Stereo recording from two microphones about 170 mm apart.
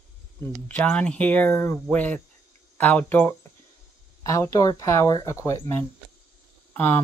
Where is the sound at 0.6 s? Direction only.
10° left (ahead or behind).